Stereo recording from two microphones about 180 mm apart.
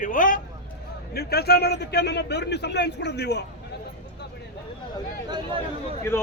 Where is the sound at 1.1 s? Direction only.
60° left (ahead or behind).